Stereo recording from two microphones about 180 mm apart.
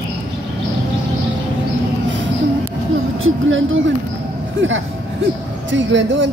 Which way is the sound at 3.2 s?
90° right.